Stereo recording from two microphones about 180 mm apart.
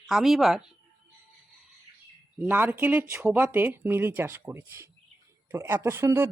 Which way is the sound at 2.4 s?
10° right (ahead or behind).